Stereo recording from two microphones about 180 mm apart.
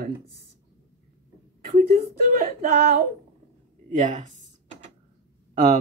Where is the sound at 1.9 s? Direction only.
55° right (ahead or behind).